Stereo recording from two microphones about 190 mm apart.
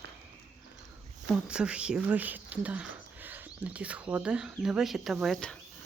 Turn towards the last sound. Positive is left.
turn(degrees=5)  # may be behind; listen again after turning